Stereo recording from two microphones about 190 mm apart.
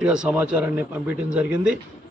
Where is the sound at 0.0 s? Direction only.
5° right (ahead or behind).